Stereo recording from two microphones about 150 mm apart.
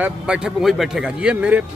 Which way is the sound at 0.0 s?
5° right (ahead or behind).